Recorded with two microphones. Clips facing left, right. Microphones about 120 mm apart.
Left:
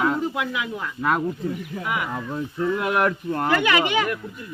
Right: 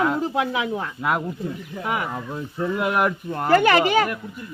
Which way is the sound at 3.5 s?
40° right (ahead or behind).